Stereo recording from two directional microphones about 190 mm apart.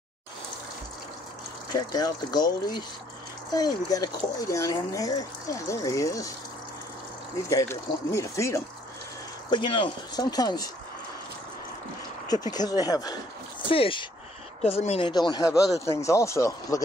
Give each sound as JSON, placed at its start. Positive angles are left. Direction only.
{"t": 1.8, "sound": "speech", "side_deg": 20}
{"t": 7.4, "sound": "speech", "side_deg": 15}
{"t": 9.5, "sound": "speech", "side_deg": 25}
{"t": 12.3, "sound": "speech", "side_deg": 20}